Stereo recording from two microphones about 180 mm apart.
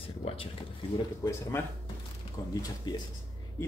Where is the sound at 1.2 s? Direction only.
20° left (ahead or behind).